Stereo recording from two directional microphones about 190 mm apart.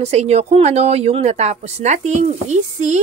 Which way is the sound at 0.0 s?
35° right (ahead or behind).